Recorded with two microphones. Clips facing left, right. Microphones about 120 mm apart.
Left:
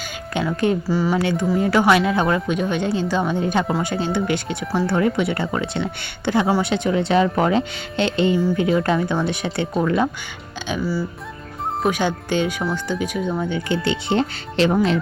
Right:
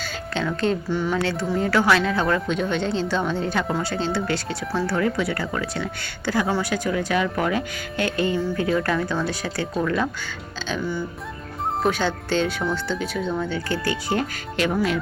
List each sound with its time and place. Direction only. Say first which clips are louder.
0.0 s speech: left 2 dB; 15° left (ahead or behind)
10.7 s speech: left 3 dB; 5° left (ahead or behind); by 14.9 s 30° left (ahead or behind)